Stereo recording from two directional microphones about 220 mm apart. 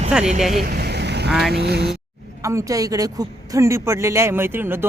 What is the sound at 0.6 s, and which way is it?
Vehicle, 45° right (ahead or behind).